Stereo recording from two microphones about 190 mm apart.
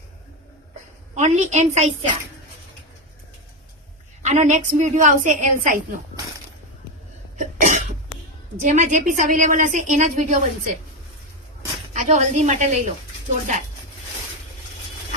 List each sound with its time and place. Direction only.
1.1 s a woman's voice: 40° right (ahead or behind)
4.2 s a woman's voice: 40° right (ahead or behind)
7.3 s cough: 40° right (ahead or behind)
8.6 s a woman's voice: 40° right (ahead or behind)
11.9 s a woman's voice: 35° right (ahead or behind)